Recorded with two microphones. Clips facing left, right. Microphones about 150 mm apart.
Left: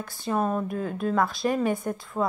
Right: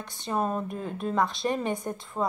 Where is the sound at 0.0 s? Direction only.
Centre (ahead or behind).